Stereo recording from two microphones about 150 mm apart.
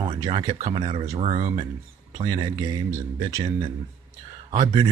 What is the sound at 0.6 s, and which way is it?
Speech, 45° right (ahead or behind).